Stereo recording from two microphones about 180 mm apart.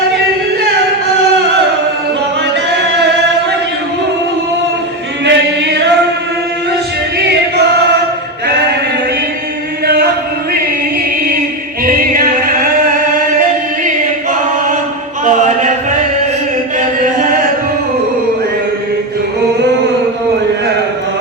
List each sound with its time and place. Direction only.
5.2 s choir: 75° right (ahead or behind)
9.8 s chant: 60° right (ahead or behind)
11.9 s singing: 55° right (ahead or behind)
15.2 s chant: 45° right (ahead or behind)